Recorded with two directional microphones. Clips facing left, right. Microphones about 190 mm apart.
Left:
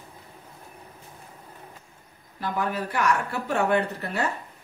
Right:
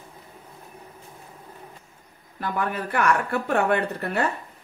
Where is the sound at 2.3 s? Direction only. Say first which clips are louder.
Right 1 dB; 55° right (ahead or behind).